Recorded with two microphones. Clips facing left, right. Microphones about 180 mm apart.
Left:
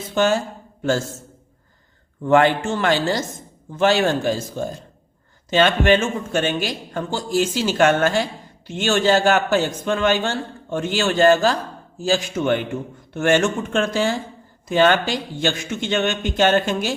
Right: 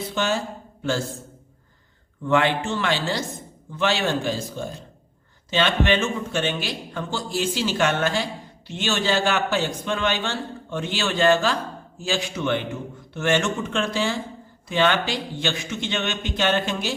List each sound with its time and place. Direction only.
0.1 s a man's voice: 45° left (ahead or behind)
2.2 s a man's voice: 45° left (ahead or behind)